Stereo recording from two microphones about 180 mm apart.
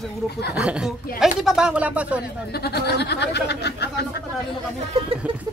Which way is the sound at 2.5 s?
65° left (ahead or behind).